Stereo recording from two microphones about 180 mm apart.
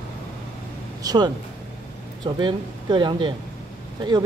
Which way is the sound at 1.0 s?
20° right (ahead or behind).